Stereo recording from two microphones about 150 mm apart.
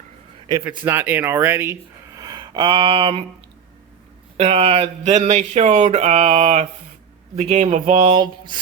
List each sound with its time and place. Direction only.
0.9 s speech: 15° right (ahead or behind); by 3.2 s 35° right (ahead or behind)
4.4 s speech: 45° right (ahead or behind)
8.1 s a sound: 30° right (ahead or behind)